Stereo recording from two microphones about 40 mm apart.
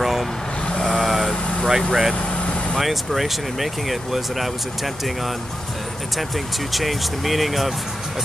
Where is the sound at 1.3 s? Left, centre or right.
Left.